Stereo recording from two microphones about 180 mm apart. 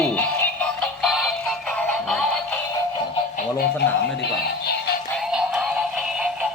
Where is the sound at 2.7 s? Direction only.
25° left (ahead or behind).